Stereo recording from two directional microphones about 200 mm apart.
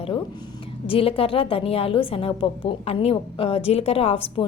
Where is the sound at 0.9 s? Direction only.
30° left (ahead or behind).